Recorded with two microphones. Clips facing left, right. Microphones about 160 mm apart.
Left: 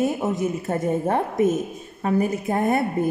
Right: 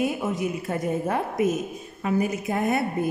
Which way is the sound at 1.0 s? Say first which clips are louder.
Left 4 dB; 35° left (ahead or behind).